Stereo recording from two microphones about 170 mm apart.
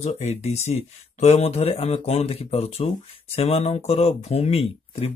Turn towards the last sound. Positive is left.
turn(degrees=35)  # may be behind; listen again after turning